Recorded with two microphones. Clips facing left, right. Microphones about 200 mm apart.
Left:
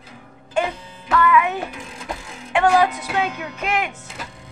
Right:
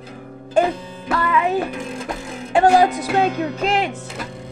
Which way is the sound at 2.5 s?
35° right (ahead or behind).